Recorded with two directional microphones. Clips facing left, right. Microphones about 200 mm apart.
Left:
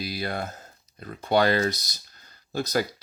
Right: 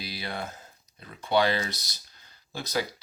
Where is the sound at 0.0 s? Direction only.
45° left (ahead or behind).